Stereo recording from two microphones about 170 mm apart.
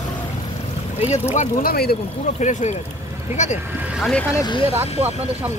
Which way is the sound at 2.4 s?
45° left (ahead or behind).